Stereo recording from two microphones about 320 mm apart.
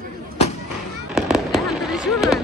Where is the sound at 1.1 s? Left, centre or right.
Centre.